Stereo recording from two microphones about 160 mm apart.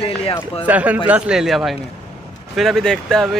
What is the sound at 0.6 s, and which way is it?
A man's voice, 10° right (ahead or behind).